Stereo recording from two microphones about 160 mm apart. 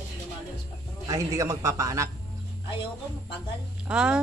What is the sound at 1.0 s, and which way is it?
A man's voice, 20° right (ahead or behind).